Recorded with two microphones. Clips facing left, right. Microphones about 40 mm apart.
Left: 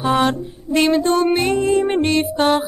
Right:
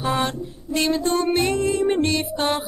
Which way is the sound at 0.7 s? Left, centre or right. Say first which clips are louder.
Left 6 dB; left.